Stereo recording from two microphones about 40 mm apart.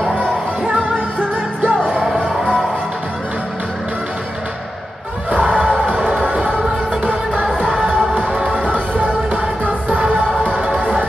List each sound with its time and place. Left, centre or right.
1.6 s music: right
2.0 s music: centre
5.3 s music: right
7.4 s music: centre